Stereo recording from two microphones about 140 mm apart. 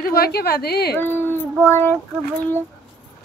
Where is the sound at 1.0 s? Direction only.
15° left (ahead or behind).